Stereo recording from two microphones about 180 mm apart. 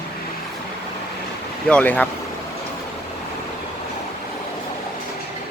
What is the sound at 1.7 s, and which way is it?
Speech, 10° left (ahead or behind).